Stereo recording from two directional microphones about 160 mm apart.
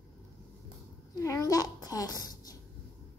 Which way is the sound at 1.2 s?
20° left (ahead or behind).